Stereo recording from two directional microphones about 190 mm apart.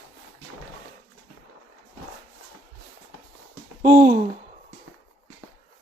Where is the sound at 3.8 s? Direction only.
20° right (ahead or behind).